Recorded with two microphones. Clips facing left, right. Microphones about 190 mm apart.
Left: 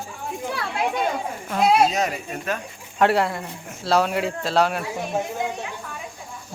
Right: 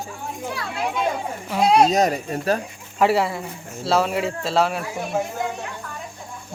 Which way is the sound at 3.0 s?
Centre (ahead or behind).